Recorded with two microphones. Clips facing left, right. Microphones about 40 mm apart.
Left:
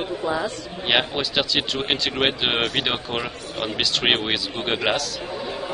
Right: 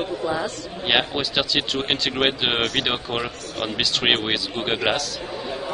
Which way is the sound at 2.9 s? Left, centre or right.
Centre.